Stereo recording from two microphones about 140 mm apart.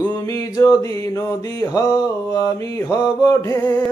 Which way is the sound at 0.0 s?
30° left (ahead or behind).